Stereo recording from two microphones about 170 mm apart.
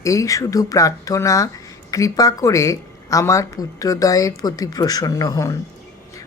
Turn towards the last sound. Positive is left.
turn(degrees=20)  # may be behind; listen again after turning